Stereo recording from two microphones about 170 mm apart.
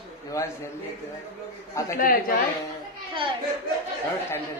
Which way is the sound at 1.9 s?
55° left (ahead or behind).